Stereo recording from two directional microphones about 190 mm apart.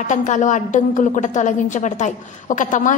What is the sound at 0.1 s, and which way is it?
A woman's voice, 40° left (ahead or behind).